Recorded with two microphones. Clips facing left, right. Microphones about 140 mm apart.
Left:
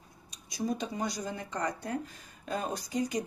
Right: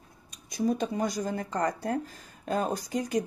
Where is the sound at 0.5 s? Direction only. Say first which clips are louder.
Right 5 dB; 55° right (ahead or behind).